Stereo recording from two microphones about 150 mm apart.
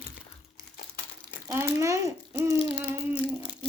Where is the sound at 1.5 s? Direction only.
20° right (ahead or behind).